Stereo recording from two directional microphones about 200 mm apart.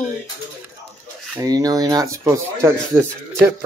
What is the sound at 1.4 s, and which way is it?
Speech, 20° right (ahead or behind).